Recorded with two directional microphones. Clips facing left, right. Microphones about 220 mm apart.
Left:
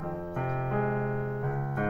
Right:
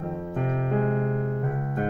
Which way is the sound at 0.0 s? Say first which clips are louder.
Right 4 dB; 30° right (ahead or behind).